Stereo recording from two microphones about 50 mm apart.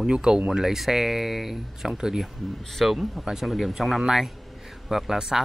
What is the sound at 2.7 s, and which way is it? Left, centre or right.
Speech, centre.